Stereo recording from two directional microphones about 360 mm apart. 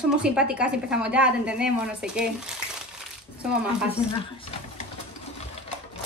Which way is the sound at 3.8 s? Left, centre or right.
Centre.